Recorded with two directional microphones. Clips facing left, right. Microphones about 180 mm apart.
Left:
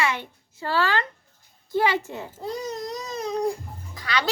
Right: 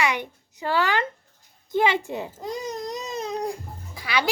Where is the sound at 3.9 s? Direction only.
10° right (ahead or behind).